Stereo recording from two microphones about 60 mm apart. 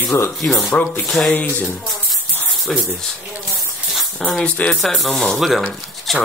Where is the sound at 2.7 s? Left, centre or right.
Centre.